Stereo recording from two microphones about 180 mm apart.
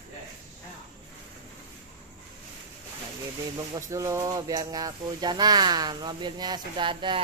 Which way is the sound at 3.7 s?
20° right (ahead or behind).